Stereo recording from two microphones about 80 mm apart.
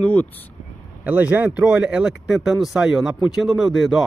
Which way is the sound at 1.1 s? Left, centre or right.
Right.